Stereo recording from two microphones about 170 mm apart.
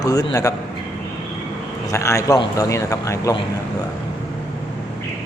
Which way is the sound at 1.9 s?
15° left (ahead or behind).